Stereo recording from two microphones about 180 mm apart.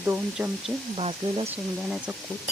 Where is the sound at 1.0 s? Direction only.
35° right (ahead or behind).